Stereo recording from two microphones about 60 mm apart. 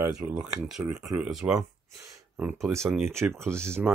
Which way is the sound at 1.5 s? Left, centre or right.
Right.